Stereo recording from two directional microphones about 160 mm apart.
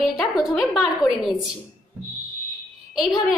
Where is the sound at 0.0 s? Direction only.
Centre (ahead or behind).